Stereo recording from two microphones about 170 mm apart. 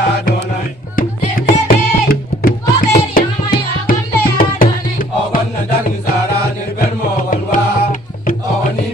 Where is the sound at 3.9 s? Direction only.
55° left (ahead or behind).